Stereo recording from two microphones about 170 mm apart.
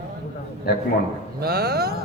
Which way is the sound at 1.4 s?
65° right (ahead or behind).